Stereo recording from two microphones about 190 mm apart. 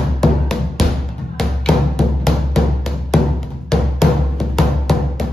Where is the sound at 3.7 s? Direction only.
Centre (ahead or behind).